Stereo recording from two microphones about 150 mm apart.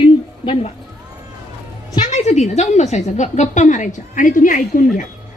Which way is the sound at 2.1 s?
50° left (ahead or behind).